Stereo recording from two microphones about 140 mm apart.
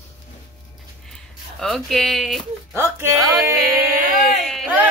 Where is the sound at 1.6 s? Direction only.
Centre (ahead or behind).